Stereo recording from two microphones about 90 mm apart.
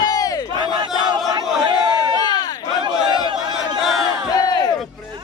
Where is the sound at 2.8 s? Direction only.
60° right (ahead or behind).